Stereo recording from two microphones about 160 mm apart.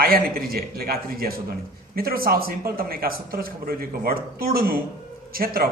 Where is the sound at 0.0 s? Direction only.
65° right (ahead or behind).